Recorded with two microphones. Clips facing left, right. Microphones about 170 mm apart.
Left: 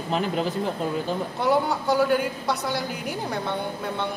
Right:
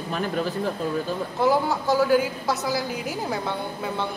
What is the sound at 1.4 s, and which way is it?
Speech, centre (ahead or behind).